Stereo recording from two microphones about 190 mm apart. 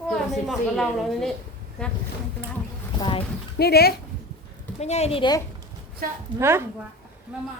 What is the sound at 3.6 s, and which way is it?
Speech, 55° left (ahead or behind).